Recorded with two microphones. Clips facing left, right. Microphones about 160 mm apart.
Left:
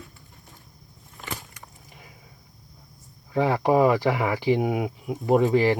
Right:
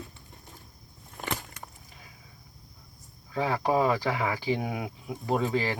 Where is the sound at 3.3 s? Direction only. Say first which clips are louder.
Left 6 dB; 20° left (ahead or behind).